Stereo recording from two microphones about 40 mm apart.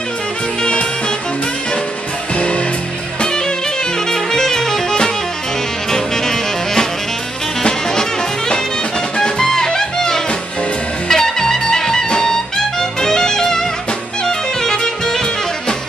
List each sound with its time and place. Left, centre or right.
2.3 s music: left
4.1 s music: centre
5.9 s music: centre